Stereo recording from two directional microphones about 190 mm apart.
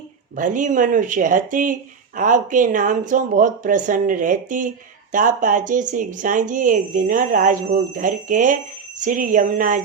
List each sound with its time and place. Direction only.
0.3 s speech: 45° right (ahead or behind)